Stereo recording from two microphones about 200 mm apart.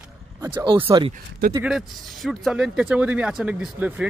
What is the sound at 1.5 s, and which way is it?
Speech, 5° right (ahead or behind).